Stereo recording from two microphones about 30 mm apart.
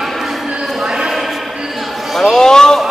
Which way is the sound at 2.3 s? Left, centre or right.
Left.